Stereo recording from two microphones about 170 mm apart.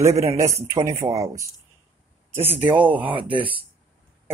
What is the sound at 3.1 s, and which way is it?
Speech, 30° right (ahead or behind).